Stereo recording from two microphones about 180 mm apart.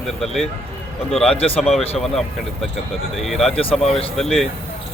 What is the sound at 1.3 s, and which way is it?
Speech, 30° left (ahead or behind).